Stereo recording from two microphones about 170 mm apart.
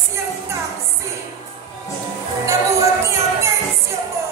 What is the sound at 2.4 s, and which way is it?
Music, 15° right (ahead or behind).